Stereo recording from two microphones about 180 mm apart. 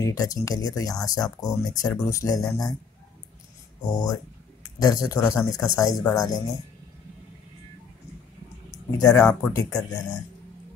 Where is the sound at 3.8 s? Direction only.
25° left (ahead or behind).